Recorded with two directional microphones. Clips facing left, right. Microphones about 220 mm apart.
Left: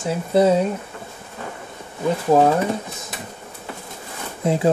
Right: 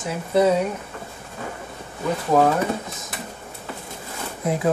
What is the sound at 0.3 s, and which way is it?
Speech, 30° left (ahead or behind).